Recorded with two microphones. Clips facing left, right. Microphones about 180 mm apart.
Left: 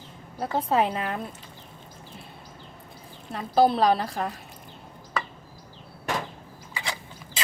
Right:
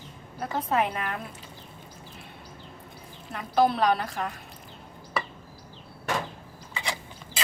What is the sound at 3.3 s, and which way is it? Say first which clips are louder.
A woman's voice: left 3 dB; 30° left (ahead or behind).